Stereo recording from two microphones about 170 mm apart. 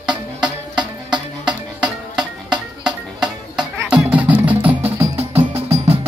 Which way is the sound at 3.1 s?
5° right (ahead or behind).